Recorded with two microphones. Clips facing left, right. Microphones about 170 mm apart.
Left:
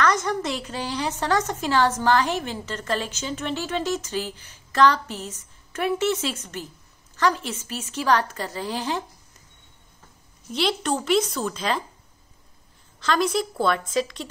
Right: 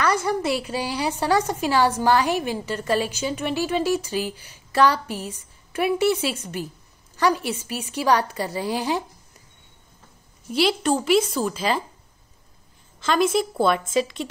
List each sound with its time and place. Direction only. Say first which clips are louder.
0.0 s a woman's voice: right 1 dB; 10° right (ahead or behind)
10.5 s a woman's voice: right 4 dB; 5° right (ahead or behind)
13.0 s a woman's voice: right 2 dB; 5° right (ahead or behind)